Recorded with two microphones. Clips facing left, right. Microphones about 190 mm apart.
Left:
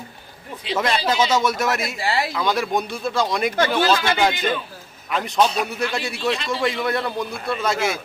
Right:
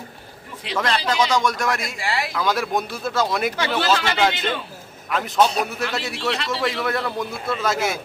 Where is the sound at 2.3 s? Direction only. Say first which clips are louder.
Left 1 dB; centre (ahead or behind).